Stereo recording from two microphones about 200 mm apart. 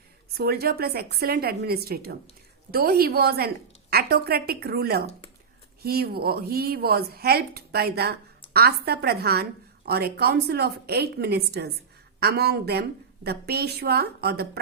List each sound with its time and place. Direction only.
0.3 s a woman's voice: 50° right (ahead or behind)